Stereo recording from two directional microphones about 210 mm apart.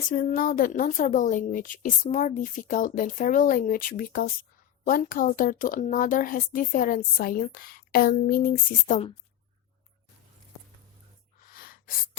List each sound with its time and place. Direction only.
0.1 s a woman's voice: 40° left (ahead or behind)
11.4 s gasp: 45° left (ahead or behind)